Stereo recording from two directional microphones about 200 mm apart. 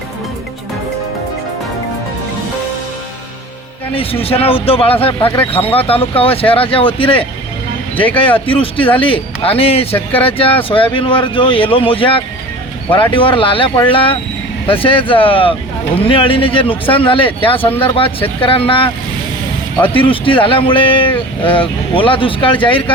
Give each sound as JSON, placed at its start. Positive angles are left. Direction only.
{"t": 3.9, "sound": "speech", "side_deg": 30}
{"t": 7.9, "sound": "speech", "side_deg": 5}
{"t": 8.4, "sound": "speech", "side_deg": 25}
{"t": 20.0, "sound": "speech", "side_deg": 25}